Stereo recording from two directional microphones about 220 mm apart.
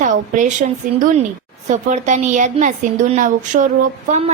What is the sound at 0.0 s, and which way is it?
Speech, 35° right (ahead or behind).